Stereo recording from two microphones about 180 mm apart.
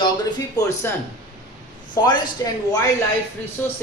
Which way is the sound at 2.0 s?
25° left (ahead or behind).